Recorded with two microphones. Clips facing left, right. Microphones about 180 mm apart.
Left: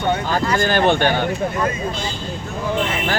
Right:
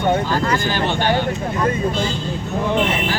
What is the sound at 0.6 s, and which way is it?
Speech, 55° left (ahead or behind).